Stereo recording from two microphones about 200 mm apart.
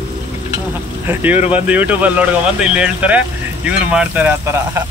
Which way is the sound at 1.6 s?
10° right (ahead or behind).